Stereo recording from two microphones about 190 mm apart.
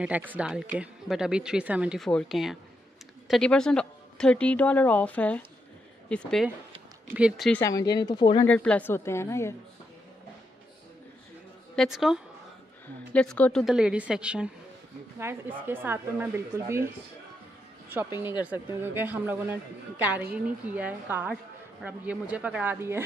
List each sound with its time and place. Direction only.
0.0 s a woman's voice: 10° right (ahead or behind)
7.5 s speech: 15° left (ahead or behind)
8.5 s a woman's voice: 5° left (ahead or behind)
11.7 s a woman's voice: centre (ahead or behind)
18.4 s a woman's voice: 10° right (ahead or behind)